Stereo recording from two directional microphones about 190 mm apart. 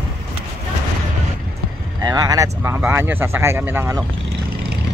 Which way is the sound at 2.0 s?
20° right (ahead or behind).